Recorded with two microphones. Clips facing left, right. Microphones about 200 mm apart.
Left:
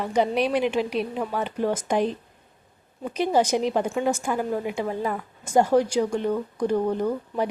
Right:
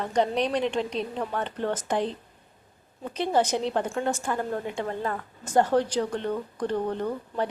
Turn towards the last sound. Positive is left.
turn(degrees=10)  # may be behind; listen again after turning